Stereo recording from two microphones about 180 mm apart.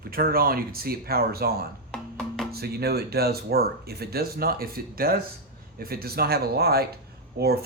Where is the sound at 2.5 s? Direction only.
60° right (ahead or behind).